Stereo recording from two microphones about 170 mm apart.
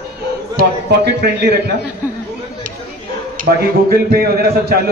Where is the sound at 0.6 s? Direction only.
75° right (ahead or behind).